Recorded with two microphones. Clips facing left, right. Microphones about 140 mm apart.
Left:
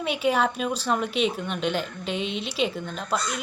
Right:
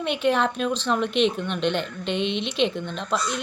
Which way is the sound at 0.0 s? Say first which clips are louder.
Right 1 dB; 5° left (ahead or behind).